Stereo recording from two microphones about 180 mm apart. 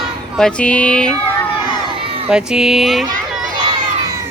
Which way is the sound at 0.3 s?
5° left (ahead or behind).